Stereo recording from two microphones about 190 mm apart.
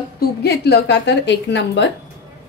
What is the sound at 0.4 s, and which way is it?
A woman's voice, 60° left (ahead or behind).